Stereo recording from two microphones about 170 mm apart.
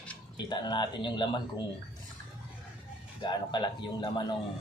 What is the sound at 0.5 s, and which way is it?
Speech, 25° left (ahead or behind).